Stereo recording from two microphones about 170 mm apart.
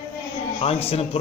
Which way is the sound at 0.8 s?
35° left (ahead or behind).